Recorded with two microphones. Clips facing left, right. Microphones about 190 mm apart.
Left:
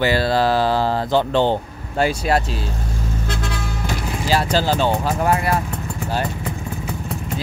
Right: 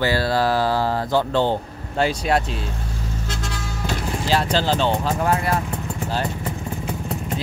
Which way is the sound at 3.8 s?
10° left (ahead or behind).